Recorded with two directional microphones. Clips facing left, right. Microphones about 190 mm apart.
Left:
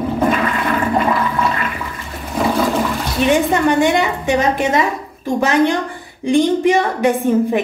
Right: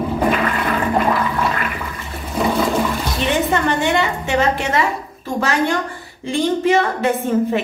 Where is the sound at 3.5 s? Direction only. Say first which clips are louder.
Left 4 dB; 15° left (ahead or behind).